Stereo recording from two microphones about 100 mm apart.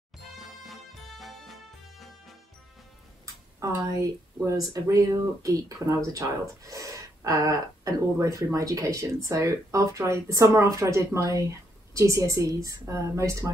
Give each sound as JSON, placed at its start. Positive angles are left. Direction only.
{"t": 0.4, "sound": "music", "side_deg": 0}
{"t": 3.6, "sound": "speech", "side_deg": -35}